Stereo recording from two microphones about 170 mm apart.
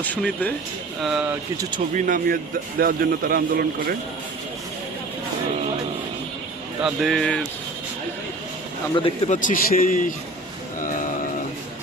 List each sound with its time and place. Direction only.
0.0 s speech: 5° left (ahead or behind)
1.0 s speech: 5° right (ahead or behind)
2.0 s a man's voice: 55° right (ahead or behind)
6.8 s speech: centre (ahead or behind)
9.0 s a man's voice: 35° left (ahead or behind)
9.3 s a man's voice: 50° left (ahead or behind)
10.8 s a sound: 50° left (ahead or behind)